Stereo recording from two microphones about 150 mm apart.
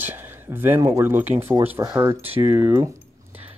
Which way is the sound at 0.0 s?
15° right (ahead or behind).